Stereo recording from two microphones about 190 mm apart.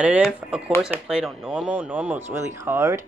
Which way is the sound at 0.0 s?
5° right (ahead or behind).